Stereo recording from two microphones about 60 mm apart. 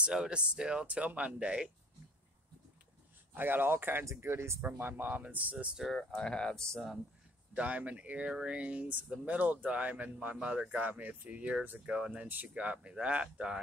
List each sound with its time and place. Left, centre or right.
0.0 s speech: centre
3.3 s speech: right
4.7 s speech: right
5.9 s speech: centre
7.5 s speech: right
8.3 s speech: centre
8.5 s speech: right